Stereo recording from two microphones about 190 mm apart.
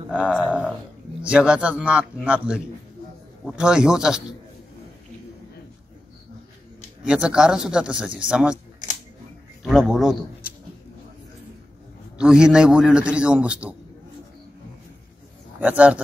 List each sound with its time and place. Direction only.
0.1 s a man's voice: 5° right (ahead or behind)
7.1 s a man's voice: 5° right (ahead or behind)
9.6 s a man's voice: centre (ahead or behind)
12.2 s a man's voice: 5° right (ahead or behind)
15.6 s a man's voice: 5° right (ahead or behind)